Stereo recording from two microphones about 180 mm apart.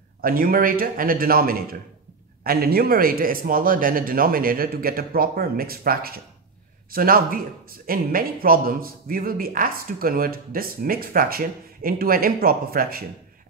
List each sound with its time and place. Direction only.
0.2 s a man's voice: 55° right (ahead or behind)